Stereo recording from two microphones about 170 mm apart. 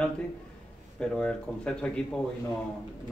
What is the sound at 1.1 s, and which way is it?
A man's voice, 5° left (ahead or behind).